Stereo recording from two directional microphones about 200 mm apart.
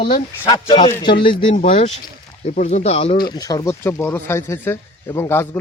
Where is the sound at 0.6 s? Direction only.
25° left (ahead or behind).